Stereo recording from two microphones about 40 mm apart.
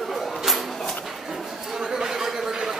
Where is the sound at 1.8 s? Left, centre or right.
Centre.